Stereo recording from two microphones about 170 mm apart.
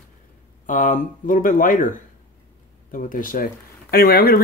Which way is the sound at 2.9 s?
55° left (ahead or behind).